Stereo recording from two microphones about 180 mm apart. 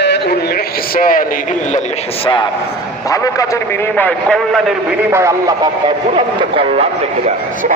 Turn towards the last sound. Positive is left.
turn(degrees=-30)  # may be behind; listen again after turning